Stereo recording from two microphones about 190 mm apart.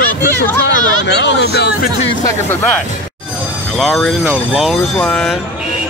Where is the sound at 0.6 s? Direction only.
60° left (ahead or behind).